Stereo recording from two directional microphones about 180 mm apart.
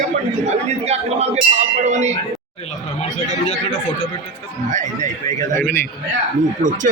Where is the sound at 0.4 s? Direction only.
35° right (ahead or behind).